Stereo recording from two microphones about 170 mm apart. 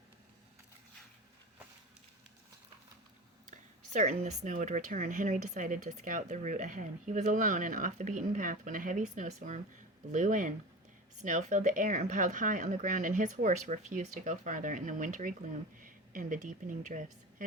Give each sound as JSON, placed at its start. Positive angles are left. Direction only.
{"t": 3.5, "sound": "speech", "side_deg": -45}